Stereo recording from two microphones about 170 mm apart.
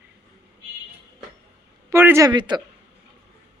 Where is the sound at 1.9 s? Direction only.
15° right (ahead or behind).